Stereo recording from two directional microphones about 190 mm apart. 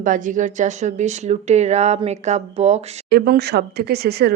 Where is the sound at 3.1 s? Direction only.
55° right (ahead or behind).